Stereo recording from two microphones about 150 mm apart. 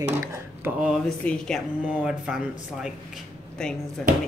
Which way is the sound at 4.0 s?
Centre (ahead or behind).